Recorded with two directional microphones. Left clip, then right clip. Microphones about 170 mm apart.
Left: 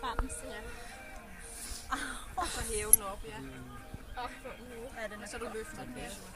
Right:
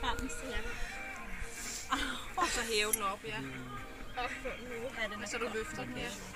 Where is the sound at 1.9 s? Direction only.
15° left (ahead or behind).